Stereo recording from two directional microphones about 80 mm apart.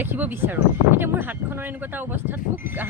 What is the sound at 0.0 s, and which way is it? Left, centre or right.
Speech, right.